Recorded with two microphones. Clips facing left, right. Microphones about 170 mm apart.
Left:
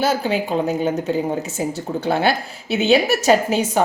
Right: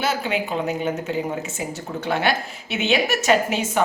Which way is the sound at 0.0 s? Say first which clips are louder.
Left 4 dB; 35° left (ahead or behind).